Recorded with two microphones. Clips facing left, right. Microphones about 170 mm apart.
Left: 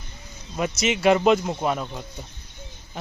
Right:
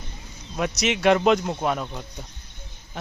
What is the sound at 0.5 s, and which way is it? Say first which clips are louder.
Speech: even; centre (ahead or behind).